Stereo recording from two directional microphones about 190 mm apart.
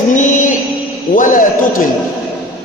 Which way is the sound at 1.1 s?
45° left (ahead or behind).